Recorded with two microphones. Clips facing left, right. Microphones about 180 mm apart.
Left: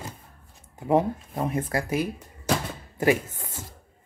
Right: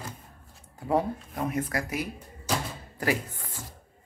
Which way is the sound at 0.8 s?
20° left (ahead or behind).